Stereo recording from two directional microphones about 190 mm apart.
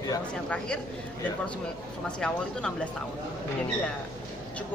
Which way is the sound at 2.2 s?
5° left (ahead or behind).